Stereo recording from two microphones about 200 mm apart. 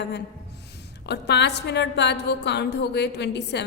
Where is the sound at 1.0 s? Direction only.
55° left (ahead or behind).